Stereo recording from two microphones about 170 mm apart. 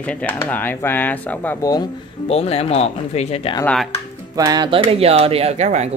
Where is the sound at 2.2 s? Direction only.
35° left (ahead or behind).